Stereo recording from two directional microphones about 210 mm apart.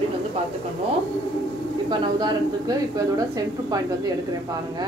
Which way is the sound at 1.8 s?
20° right (ahead or behind).